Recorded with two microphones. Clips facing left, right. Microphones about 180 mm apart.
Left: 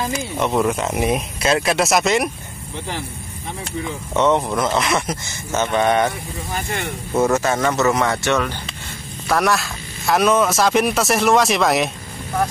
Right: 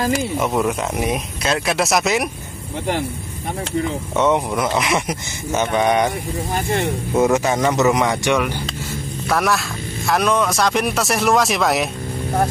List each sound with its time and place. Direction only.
0.4 s speech: 5° right (ahead or behind)
4.1 s speech: 10° right (ahead or behind)
7.2 s speech: 15° right (ahead or behind)
9.3 s speech: centre (ahead or behind)